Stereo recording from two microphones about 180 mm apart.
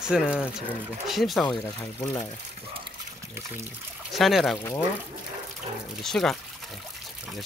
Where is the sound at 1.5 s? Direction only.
20° left (ahead or behind).